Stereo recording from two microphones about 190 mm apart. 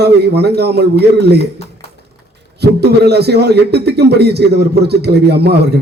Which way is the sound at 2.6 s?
60° right (ahead or behind).